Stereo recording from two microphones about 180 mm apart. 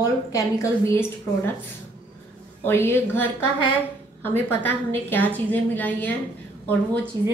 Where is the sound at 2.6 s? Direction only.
15° left (ahead or behind).